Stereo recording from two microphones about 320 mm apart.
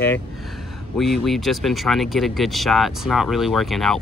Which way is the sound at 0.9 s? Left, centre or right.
Centre.